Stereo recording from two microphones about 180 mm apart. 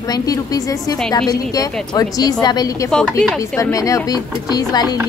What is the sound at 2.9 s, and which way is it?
Speech, 5° left (ahead or behind).